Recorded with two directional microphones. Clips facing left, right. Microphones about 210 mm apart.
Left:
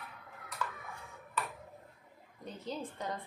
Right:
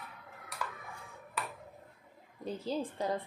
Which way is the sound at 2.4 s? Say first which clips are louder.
Right 5 dB; 30° right (ahead or behind).